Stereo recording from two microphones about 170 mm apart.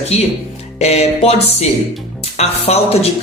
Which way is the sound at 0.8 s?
40° left (ahead or behind).